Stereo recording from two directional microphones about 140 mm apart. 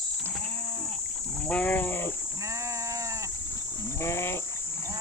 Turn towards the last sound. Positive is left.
turn(degrees=20)  # may be behind; listen again after turning